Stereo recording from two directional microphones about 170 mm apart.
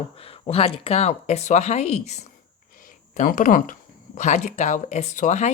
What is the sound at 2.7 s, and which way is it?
Speech, 55° left (ahead or behind).